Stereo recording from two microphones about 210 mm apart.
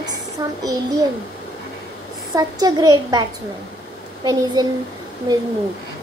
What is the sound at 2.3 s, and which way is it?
A woman's voice, 20° right (ahead or behind).